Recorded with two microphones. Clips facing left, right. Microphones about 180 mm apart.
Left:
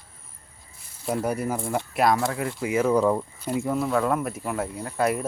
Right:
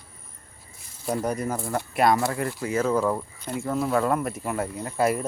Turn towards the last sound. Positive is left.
turn(degrees=-5)  # may be behind; listen again after turning